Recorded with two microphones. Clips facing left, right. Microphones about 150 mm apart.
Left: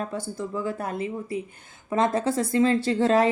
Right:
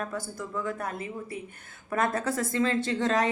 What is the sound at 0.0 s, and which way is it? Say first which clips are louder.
A woman's voice: left 4 dB; 25° left (ahead or behind).